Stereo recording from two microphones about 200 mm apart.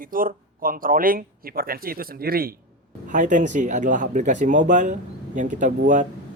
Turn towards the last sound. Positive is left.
turn(degrees=-40)  # may be behind; listen again after turning